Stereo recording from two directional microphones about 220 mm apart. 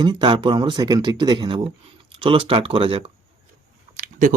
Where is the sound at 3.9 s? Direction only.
35° right (ahead or behind).